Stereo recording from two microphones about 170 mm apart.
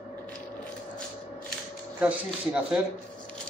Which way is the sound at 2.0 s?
10° right (ahead or behind).